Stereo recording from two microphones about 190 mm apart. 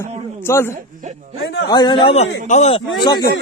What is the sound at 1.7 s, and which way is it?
A man's voice, 25° left (ahead or behind).